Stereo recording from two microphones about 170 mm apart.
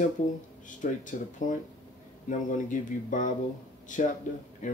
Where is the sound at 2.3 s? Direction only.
50° left (ahead or behind).